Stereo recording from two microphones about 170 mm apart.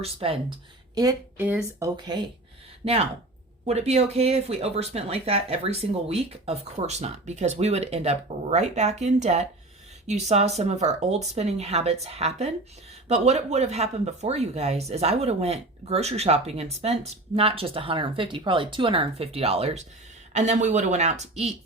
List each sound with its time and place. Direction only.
0.0 s speech: 35° right (ahead or behind)
1.4 s speech: 10° right (ahead or behind)
2.0 s speech: 25° right (ahead or behind)
2.8 s a woman's voice: 40° right (ahead or behind)